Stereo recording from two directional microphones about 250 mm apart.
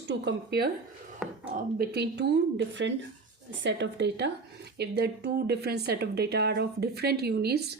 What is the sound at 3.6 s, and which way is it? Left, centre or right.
A woman's voice, right.